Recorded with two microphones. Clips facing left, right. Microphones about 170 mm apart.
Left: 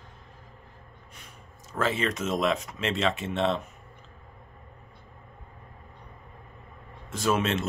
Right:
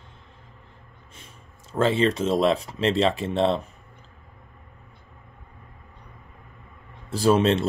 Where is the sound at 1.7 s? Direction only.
30° right (ahead or behind).